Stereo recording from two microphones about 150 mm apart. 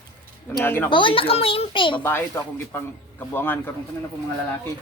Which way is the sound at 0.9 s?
35° left (ahead or behind).